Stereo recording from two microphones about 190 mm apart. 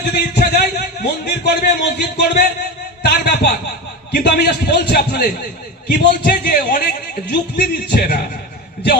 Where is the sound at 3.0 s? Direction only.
60° left (ahead or behind).